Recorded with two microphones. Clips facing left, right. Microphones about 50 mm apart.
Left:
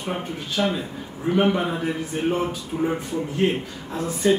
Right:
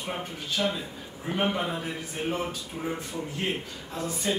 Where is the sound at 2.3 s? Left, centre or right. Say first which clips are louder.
Left 7 dB; left.